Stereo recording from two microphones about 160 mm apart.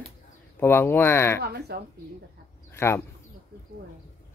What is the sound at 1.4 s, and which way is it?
Speech, 80° right.